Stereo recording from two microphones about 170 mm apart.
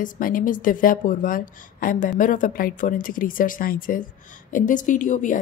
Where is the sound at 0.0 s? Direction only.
50° left (ahead or behind).